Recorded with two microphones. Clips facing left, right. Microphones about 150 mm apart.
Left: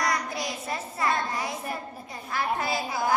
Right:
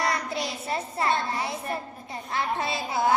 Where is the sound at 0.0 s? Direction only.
30° right (ahead or behind).